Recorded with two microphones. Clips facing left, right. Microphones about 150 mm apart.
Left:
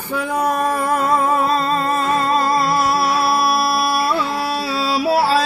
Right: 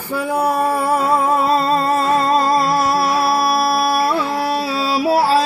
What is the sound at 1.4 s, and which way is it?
Music, 35° right (ahead or behind).